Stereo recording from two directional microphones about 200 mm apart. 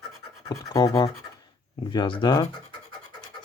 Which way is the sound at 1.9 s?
25° left (ahead or behind).